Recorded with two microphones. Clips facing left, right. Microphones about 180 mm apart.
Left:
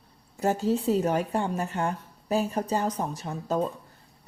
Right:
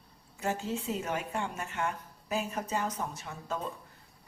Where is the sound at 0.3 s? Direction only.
35° left (ahead or behind).